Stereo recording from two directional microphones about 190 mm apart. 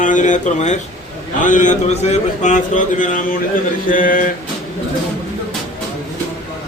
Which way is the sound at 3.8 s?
45° left (ahead or behind).